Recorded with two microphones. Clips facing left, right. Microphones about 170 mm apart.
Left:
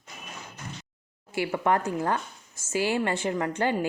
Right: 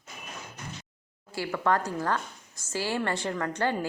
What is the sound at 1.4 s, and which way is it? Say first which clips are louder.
A woman's voice: left 2 dB; 20° left (ahead or behind).